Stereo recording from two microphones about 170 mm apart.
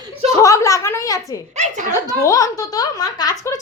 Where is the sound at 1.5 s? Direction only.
40° right (ahead or behind).